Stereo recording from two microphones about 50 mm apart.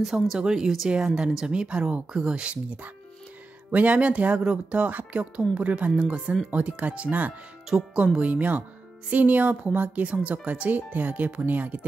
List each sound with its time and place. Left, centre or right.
0.0 s speech: centre
0.4 s speech: centre; by 7.3 s right
7.7 s speech: centre; by 11.8 s right